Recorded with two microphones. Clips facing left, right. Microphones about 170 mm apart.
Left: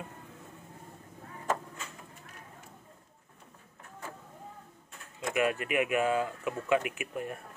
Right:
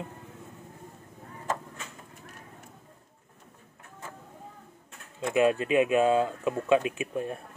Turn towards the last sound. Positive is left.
turn(degrees=-25)  # may be behind; listen again after turning